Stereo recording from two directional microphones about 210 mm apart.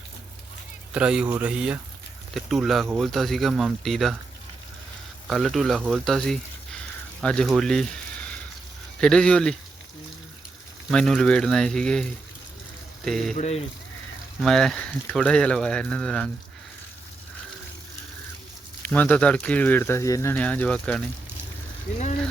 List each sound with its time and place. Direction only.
0.9 s speech: 5° right (ahead or behind)
5.3 s speech: centre (ahead or behind)
9.0 s speech: 5° left (ahead or behind)
10.9 s speech: centre (ahead or behind)
13.1 s speech: centre (ahead or behind)
13.3 s speech: 30° left (ahead or behind)
14.4 s speech: centre (ahead or behind)
18.8 s speech: 5° left (ahead or behind)